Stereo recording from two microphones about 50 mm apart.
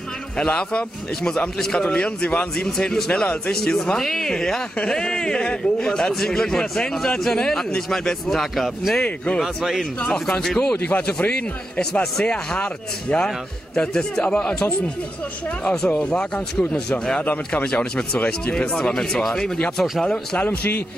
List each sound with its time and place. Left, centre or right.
0.4 s a man's voice: centre
3.6 s a man's voice: centre
8.9 s a man's voice: left
10.4 s a man's voice: centre
10.9 s a man's voice: left
11.8 s a man's voice: centre
16.0 s a man's voice: left
17.9 s a man's voice: left; by 20.2 s centre